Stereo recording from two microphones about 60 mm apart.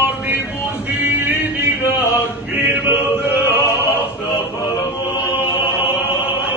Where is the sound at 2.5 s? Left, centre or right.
Right.